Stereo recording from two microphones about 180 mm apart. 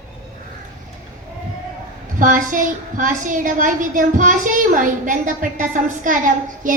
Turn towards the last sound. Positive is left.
turn(degrees=-45)  # may be behind; listen again after turning